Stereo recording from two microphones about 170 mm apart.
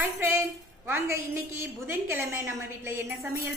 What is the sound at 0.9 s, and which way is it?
A woman's voice, 15° right (ahead or behind).